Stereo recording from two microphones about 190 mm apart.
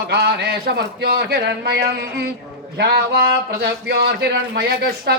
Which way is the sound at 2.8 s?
55° right (ahead or behind).